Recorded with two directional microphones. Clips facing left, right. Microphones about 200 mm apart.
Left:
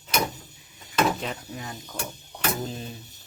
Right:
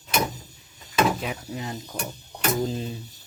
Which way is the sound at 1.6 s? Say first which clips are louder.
Right 5 dB; 20° right (ahead or behind).